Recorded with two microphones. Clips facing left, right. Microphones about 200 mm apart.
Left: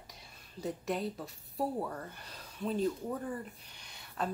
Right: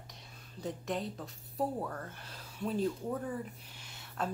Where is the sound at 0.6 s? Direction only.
5° left (ahead or behind).